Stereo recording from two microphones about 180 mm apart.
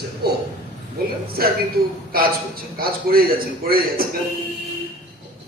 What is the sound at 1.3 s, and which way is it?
A man's voice, 55° right (ahead or behind).